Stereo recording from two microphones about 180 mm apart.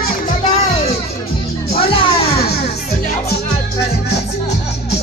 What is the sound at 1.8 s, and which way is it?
Music, 30° left (ahead or behind).